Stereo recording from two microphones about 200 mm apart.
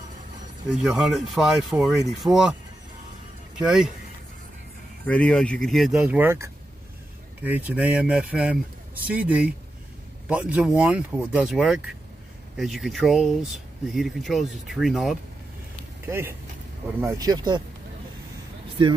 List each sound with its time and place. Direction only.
0.7 s speech: centre (ahead or behind)
3.6 s speech: 5° right (ahead or behind)
5.0 s speech: 5° left (ahead or behind)
16.1 s speech: 10° right (ahead or behind)